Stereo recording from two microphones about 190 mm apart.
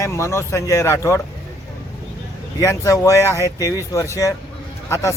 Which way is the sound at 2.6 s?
15° left (ahead or behind).